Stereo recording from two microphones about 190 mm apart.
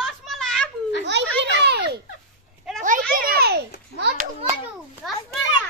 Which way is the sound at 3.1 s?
50° right (ahead or behind).